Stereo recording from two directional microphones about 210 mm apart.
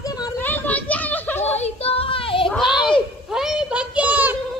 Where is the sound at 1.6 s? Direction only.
30° left (ahead or behind).